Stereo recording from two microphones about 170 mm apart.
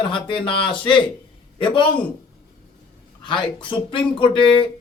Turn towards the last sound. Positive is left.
turn(degrees=30)  # may be behind; listen again after turning